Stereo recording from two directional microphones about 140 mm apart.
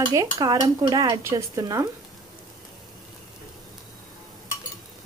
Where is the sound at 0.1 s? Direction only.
25° right (ahead or behind).